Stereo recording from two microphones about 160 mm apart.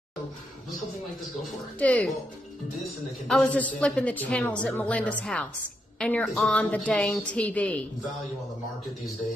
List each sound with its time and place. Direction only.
1.8 s a woman's voice: 10° left (ahead or behind)
3.3 s a woman's voice: 5° left (ahead or behind)